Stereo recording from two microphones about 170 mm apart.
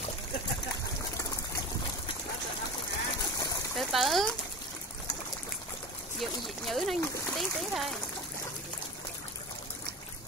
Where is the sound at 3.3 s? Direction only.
20° left (ahead or behind).